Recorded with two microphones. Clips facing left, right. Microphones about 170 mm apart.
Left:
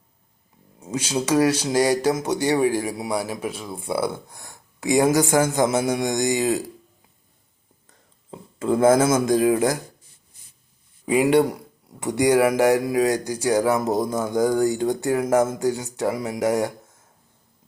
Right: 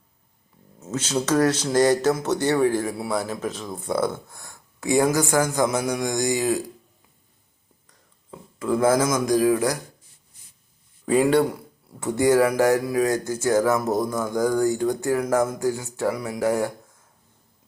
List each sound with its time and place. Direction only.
0.8 s speech: 10° left (ahead or behind)
8.3 s speech: 25° left (ahead or behind)
11.0 s speech: 15° left (ahead or behind)